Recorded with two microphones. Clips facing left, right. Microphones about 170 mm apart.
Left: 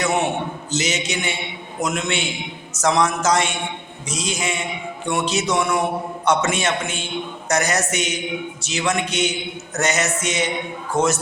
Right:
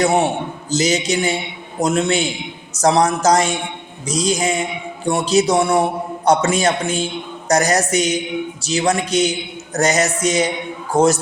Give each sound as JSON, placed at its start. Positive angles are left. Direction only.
{"t": 0.0, "sound": "a man's voice", "side_deg": -30}